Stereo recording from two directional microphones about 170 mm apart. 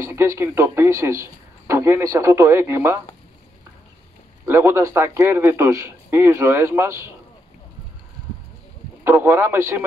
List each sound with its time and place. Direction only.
0.1 s speech: 15° right (ahead or behind)
4.5 s speech: 15° right (ahead or behind)
9.0 s speech: 15° right (ahead or behind)